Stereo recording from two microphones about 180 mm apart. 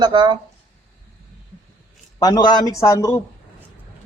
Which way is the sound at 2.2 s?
25° left (ahead or behind).